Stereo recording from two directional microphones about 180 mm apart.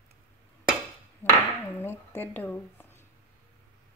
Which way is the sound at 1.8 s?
10° left (ahead or behind).